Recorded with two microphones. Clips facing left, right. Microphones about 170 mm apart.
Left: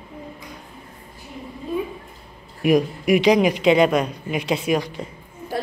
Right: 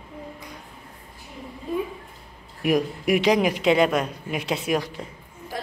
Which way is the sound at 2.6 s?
Centre (ahead or behind).